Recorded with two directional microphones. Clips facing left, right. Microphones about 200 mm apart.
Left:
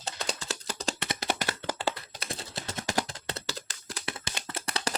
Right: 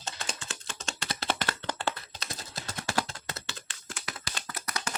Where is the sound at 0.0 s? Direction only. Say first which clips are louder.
Left 4 dB; 35° left (ahead or behind).